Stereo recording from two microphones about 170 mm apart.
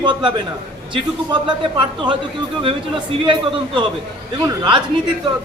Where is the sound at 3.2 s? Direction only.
30° right (ahead or behind).